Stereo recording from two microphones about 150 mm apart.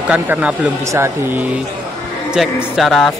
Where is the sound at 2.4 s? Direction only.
Centre (ahead or behind).